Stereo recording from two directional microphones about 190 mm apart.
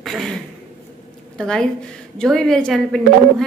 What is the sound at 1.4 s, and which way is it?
A woman's voice, 5° left (ahead or behind).